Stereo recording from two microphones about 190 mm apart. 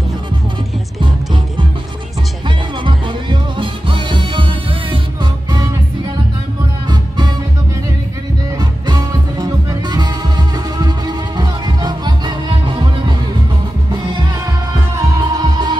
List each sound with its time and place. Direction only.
2.4 s music: 25° right (ahead or behind)
6.9 s music: 20° right (ahead or behind)
8.5 s music: 20° right (ahead or behind)
14.7 s music: 20° right (ahead or behind)